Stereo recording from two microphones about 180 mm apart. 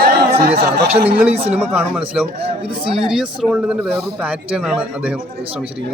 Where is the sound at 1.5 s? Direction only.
10° right (ahead or behind).